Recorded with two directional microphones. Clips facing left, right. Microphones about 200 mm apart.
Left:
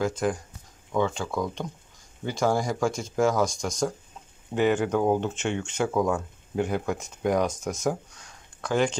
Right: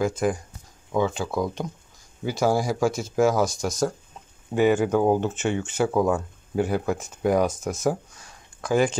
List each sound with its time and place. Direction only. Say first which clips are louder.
0.0 s speech: right 2 dB; 10° right (ahead or behind)